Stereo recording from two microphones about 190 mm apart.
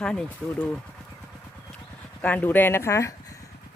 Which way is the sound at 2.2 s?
10° left (ahead or behind).